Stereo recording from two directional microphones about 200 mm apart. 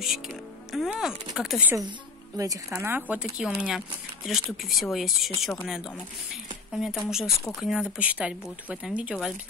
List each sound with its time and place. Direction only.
0.0 s a woman's voice: centre (ahead or behind)